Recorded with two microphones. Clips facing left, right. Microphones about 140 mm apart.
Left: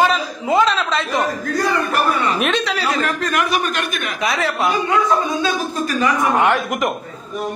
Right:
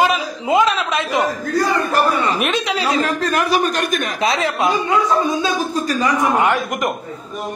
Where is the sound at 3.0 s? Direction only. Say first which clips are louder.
Right 2 dB; 35° right (ahead or behind).